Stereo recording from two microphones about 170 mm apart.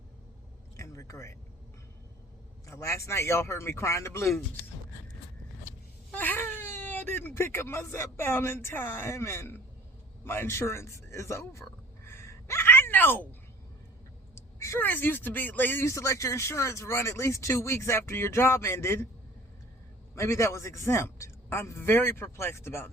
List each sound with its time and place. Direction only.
0.8 s a sound: 20° left (ahead or behind)
2.6 s speech: 15° left (ahead or behind)
6.1 s speech: 10° left (ahead or behind)
12.0 s a sound: 15° left (ahead or behind)
14.3 s speech: 15° left (ahead or behind)
20.1 s speech: 15° left (ahead or behind)